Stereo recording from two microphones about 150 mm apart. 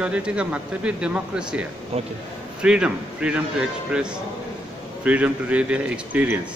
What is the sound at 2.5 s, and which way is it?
Speech, 5° right (ahead or behind).